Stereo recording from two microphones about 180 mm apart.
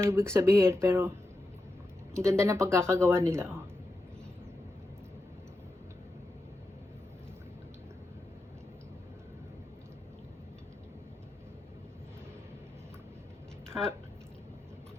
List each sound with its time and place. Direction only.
0.0 s speech: 15° right (ahead or behind)
2.1 s speech: 15° right (ahead or behind)